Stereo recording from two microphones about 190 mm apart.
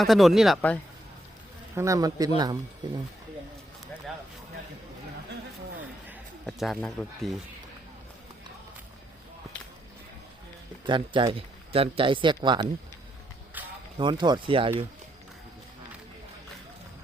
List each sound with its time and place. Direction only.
0.0 s speech: centre (ahead or behind)
1.7 s speech: 15° right (ahead or behind)
6.1 s speech: centre (ahead or behind)
10.8 s speech: 25° right (ahead or behind)
13.6 s a sound: 10° right (ahead or behind)
14.0 s speech: 25° right (ahead or behind)